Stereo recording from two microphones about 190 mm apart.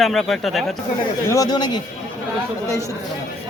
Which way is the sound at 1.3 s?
20° left (ahead or behind).